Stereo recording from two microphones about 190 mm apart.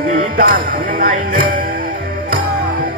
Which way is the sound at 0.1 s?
45° right (ahead or behind).